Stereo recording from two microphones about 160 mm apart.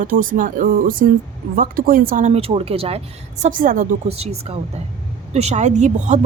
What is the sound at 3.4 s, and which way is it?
Speech, 55° right (ahead or behind).